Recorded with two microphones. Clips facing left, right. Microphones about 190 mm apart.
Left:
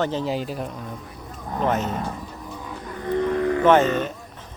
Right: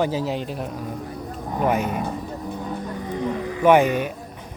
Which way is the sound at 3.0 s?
60° left (ahead or behind).